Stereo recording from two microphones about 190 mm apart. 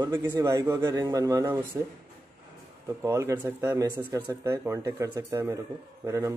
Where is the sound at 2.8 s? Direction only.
15° right (ahead or behind).